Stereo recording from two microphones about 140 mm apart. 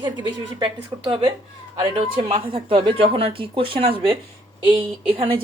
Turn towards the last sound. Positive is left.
turn(degrees=-40)  # may be behind; listen again after turning